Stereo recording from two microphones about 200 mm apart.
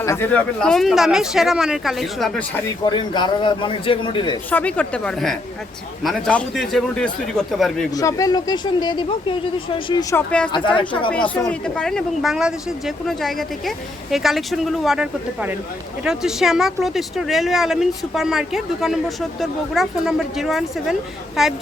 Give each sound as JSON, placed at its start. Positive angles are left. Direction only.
{"t": 0.0, "sound": "speech", "side_deg": 15}
{"t": 2.6, "sound": "speech", "side_deg": 20}
{"t": 4.5, "sound": "speech", "side_deg": 5}
{"t": 7.9, "sound": "speech", "side_deg": 15}
{"t": 11.1, "sound": "speech", "side_deg": 5}